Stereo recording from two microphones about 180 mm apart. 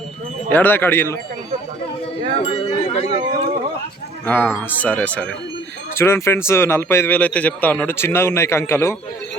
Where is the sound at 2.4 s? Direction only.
35° left (ahead or behind).